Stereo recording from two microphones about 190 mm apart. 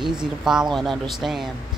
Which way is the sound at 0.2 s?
5° right (ahead or behind).